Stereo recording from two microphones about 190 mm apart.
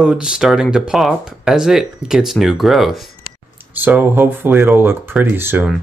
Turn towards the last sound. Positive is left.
turn(degrees=-10)  # may be behind; listen again after turning